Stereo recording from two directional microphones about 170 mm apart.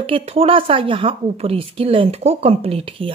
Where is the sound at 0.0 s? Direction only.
35° right (ahead or behind).